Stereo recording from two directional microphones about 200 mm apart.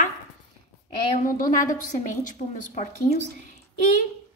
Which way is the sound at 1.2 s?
40° left (ahead or behind).